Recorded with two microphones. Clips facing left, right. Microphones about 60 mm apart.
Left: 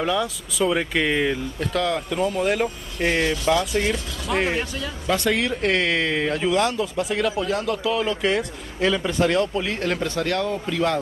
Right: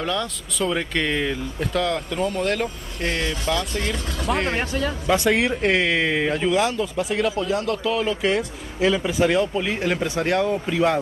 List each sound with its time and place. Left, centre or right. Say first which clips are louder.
0.0 s speech: left 2 dB; centre
3.0 s speech: left 4 dB; left
4.3 s speech: left 1 dB; centre
4.6 s a man's voice: right 3 dB; right
5.0 s speech: right 2 dB; centre